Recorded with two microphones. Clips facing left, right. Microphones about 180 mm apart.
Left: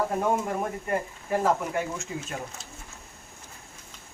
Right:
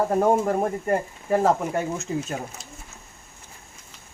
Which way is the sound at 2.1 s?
35° right (ahead or behind).